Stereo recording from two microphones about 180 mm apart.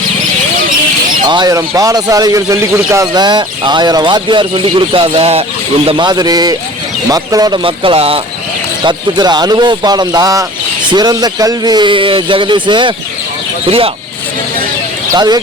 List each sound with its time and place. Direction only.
1.3 s speech: 20° right (ahead or behind)
15.1 s speech: 20° right (ahead or behind)